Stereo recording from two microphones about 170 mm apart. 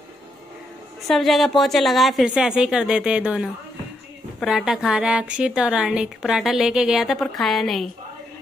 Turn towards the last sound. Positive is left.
turn(degrees=0)  # may be behind; listen again after turning